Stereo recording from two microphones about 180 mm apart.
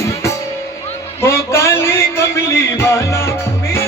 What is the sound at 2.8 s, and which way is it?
Music, 15° left (ahead or behind).